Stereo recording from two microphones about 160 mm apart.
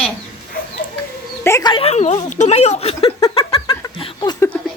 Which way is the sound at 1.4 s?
20° left (ahead or behind).